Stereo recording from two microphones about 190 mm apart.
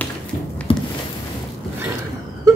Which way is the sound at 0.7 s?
25° left (ahead or behind).